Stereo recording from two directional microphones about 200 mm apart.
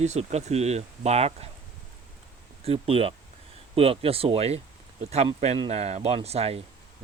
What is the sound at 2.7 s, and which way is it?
Speech, 30° right (ahead or behind).